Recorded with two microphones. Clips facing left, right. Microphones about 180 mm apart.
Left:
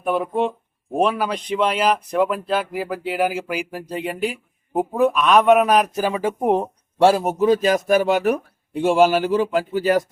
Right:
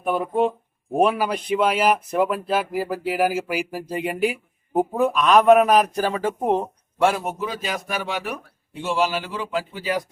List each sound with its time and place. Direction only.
0.0 s speech: centre (ahead or behind)
6.0 s speech: 10° left (ahead or behind)
7.0 s a man's voice: 35° left (ahead or behind)